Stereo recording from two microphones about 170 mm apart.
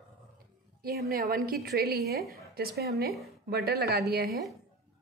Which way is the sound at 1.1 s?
60° right (ahead or behind).